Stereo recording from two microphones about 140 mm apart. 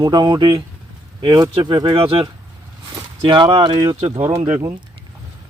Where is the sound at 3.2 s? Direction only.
35° right (ahead or behind).